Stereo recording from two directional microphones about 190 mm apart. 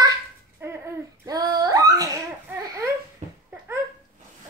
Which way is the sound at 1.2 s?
20° right (ahead or behind).